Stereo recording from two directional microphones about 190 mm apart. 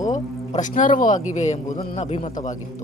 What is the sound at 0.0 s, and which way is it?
Speech, 40° left (ahead or behind).